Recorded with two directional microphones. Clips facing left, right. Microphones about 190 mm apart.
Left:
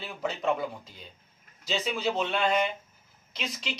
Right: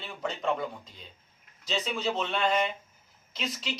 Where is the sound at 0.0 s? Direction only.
5° left (ahead or behind).